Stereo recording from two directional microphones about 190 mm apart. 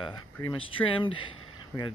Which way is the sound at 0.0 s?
25° left (ahead or behind).